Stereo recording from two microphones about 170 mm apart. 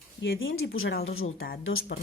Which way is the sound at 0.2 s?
90° left.